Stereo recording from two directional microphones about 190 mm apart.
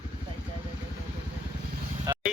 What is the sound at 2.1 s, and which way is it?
Vehicle, 20° right (ahead or behind).